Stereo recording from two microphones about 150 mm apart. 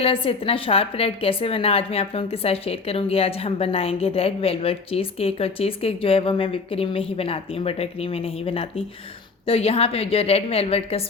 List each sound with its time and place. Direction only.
0.0 s a woman's voice: 40° left (ahead or behind)